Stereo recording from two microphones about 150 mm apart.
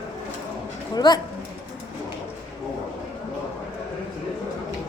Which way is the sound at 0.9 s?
30° left (ahead or behind).